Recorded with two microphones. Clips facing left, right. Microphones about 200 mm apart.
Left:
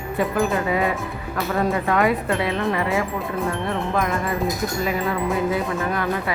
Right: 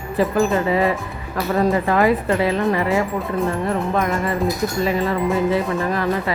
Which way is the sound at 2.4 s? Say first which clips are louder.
Right 4 dB; 30° right (ahead or behind).